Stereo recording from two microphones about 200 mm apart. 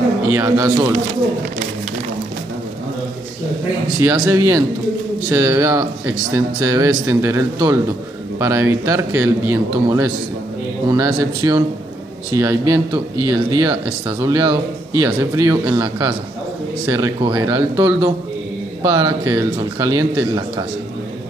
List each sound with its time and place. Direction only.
0.3 s speech: 10° right (ahead or behind)
4.0 s a man's voice: 15° right (ahead or behind)